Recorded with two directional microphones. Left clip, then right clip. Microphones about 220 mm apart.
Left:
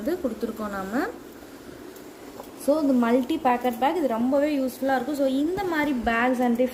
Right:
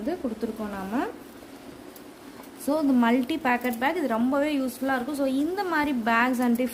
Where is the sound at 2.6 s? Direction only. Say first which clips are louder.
Left 1 dB; 30° right (ahead or behind).